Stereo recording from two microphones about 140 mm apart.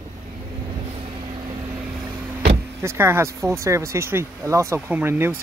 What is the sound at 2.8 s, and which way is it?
Speech, 15° right (ahead or behind).